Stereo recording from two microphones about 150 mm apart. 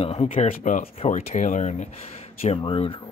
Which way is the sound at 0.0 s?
40° left (ahead or behind).